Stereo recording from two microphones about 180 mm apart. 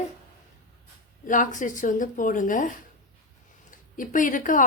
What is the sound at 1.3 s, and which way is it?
Speech, 45° left (ahead or behind).